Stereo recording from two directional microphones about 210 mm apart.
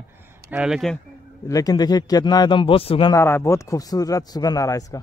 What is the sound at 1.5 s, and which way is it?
A man's voice, 15° left (ahead or behind).